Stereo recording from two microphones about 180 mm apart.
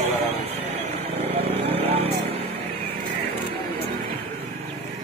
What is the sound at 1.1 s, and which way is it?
Vehicle, 35° right (ahead or behind).